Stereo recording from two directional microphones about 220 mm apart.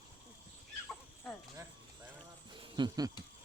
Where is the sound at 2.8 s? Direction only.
15° right (ahead or behind).